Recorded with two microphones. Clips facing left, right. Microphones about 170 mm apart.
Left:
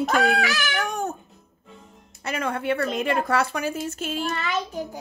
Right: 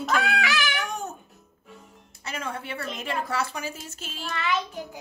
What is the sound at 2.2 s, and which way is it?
A woman's voice, 65° left (ahead or behind).